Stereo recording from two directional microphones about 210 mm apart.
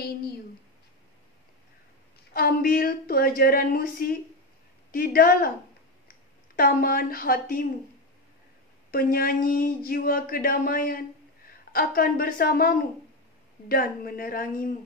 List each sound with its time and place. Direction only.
2.3 s speech: 45° left (ahead or behind)
8.9 s speech: 45° left (ahead or behind)